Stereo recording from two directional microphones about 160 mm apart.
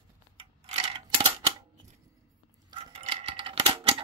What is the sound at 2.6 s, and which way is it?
Coin, 35° right (ahead or behind).